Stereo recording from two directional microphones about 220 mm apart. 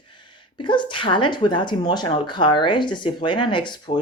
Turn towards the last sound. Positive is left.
turn(degrees=20)  # may be behind; listen again after turning